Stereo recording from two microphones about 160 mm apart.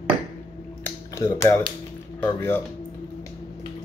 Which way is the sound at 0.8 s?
15° left (ahead or behind).